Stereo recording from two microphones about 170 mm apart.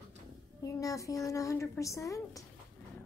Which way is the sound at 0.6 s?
20° left (ahead or behind).